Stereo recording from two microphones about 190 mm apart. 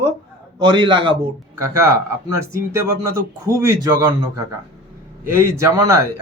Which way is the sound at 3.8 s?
20° right (ahead or behind).